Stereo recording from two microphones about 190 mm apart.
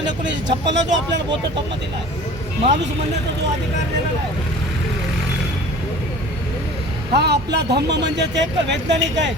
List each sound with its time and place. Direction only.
0.3 s speech: 70° right (ahead or behind)
7.1 s speech: 60° right (ahead or behind)